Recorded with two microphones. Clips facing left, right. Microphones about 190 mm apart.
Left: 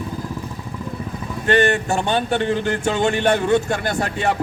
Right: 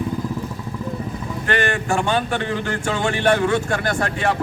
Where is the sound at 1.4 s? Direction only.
20° left (ahead or behind).